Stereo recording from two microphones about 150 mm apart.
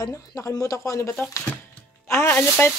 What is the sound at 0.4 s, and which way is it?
Speech, 15° left (ahead or behind).